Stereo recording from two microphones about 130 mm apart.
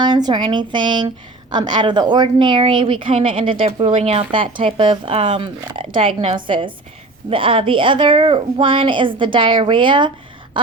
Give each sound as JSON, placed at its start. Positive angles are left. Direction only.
{"t": 0.3, "sound": "a woman's voice", "side_deg": -35}